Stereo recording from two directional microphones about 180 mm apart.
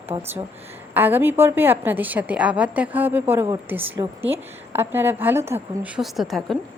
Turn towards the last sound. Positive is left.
turn(degrees=0)  # may be behind; listen again after turning